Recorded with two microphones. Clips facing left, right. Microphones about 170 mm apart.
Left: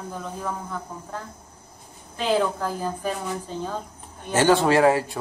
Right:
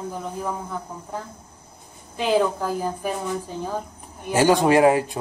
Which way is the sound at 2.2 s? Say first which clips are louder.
Right 2 dB; 15° right (ahead or behind).